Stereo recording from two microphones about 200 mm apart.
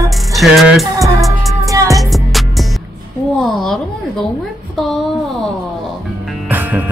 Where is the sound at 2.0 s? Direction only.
Centre (ahead or behind).